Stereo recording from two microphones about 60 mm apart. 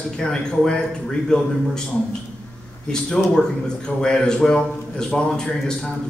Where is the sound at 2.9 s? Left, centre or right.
Centre.